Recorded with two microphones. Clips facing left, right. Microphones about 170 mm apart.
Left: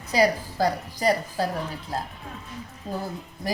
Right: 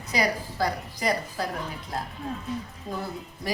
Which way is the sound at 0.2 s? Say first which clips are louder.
Left 5 dB; 35° left (ahead or behind).